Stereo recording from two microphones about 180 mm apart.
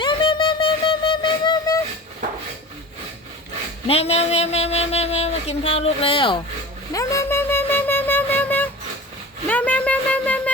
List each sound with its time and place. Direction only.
0.0 s music: 30° left (ahead or behind)
3.8 s speech: 35° left (ahead or behind)
6.9 s music: 15° left (ahead or behind)